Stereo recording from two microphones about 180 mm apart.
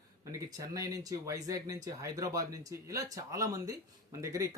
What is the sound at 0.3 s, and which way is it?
Speech, 20° right (ahead or behind).